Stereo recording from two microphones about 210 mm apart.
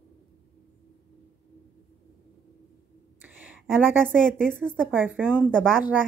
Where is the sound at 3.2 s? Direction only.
5° right (ahead or behind).